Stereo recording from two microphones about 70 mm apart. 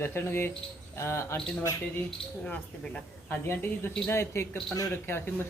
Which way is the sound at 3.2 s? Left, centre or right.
Left.